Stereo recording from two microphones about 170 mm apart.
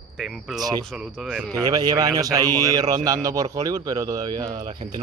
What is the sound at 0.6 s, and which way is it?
Speech, 20° right (ahead or behind).